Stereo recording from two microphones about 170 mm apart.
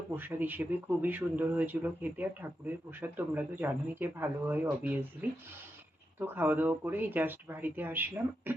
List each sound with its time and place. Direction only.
0.2 s speech: 10° right (ahead or behind)
6.1 s speech: 10° right (ahead or behind)